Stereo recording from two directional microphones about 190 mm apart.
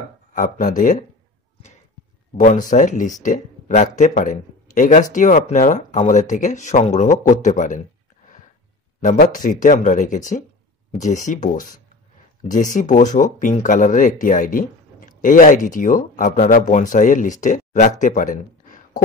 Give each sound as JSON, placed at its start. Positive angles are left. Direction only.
{"t": 0.3, "sound": "speech", "side_deg": 45}
{"t": 2.3, "sound": "speech", "side_deg": 45}
{"t": 9.0, "sound": "speech", "side_deg": 45}